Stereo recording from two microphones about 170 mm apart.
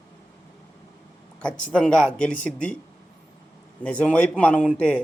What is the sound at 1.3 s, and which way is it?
Speech, 5° left (ahead or behind).